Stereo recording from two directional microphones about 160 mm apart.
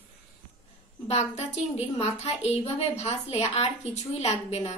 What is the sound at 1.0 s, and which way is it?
A woman's voice, 40° left (ahead or behind).